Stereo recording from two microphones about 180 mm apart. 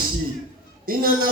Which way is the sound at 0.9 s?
55° right (ahead or behind).